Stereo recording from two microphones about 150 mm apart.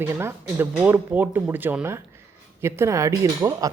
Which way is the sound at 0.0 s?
15° right (ahead or behind).